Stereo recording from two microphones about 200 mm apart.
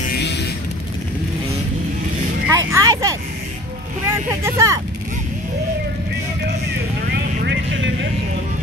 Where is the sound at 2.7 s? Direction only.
15° right (ahead or behind).